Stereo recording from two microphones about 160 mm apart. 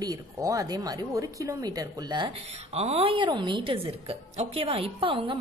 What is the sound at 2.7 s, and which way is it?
A woman's voice, 40° right (ahead or behind).